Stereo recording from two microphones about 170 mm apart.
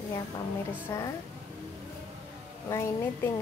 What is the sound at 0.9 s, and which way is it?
Speech, 15° left (ahead or behind).